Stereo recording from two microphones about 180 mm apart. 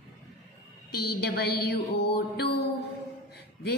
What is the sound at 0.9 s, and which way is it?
Music, 60° left (ahead or behind).